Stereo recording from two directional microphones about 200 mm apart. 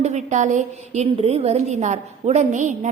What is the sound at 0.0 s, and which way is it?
A woman's voice, 35° right (ahead or behind).